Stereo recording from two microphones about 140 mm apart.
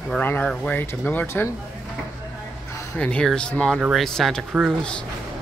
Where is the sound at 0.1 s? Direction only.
10° left (ahead or behind).